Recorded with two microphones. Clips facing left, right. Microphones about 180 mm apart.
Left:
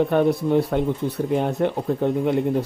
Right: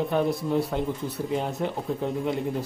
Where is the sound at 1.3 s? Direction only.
55° left (ahead or behind).